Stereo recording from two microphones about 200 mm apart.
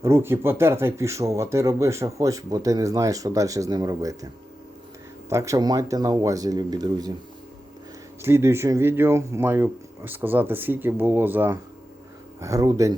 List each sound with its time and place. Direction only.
0.0 s speech: 10° right (ahead or behind)
5.3 s speech: 15° right (ahead or behind)
8.2 s speech: 10° right (ahead or behind)